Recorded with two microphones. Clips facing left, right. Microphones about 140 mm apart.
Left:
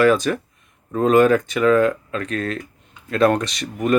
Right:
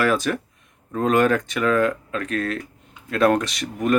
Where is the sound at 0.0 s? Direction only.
Centre (ahead or behind).